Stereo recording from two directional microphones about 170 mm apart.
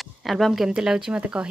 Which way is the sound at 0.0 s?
Centre (ahead or behind).